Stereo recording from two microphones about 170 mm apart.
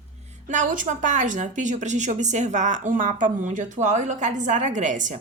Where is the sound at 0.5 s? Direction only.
50° right (ahead or behind).